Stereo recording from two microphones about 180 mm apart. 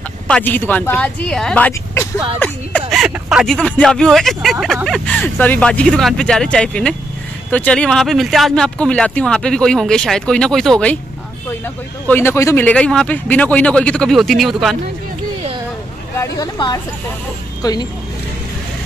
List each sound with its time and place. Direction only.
0.3 s speech: 10° left (ahead or behind)
2.9 s speech: 5° right (ahead or behind)
12.1 s speech: 15° left (ahead or behind)
16.2 s speech: 20° left (ahead or behind)